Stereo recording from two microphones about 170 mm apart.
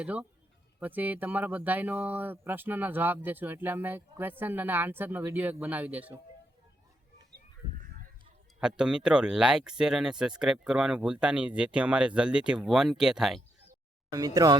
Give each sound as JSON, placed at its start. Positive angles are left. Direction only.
{"t": 0.0, "sound": "speech", "side_deg": -10}
{"t": 8.6, "sound": "speech", "side_deg": -5}
{"t": 14.1, "sound": "speech", "side_deg": -20}